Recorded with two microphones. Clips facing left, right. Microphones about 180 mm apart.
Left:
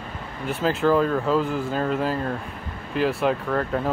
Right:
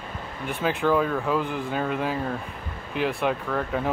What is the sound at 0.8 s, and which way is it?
Speech, centre (ahead or behind).